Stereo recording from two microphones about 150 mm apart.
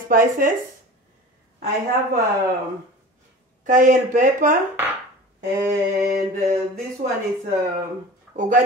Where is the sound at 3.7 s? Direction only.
60° right (ahead or behind).